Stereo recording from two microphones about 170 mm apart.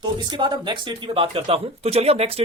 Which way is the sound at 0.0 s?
25° right (ahead or behind).